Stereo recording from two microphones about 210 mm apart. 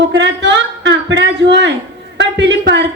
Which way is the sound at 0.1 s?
55° right (ahead or behind).